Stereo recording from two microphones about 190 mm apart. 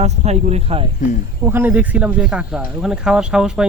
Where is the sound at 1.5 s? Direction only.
10° right (ahead or behind).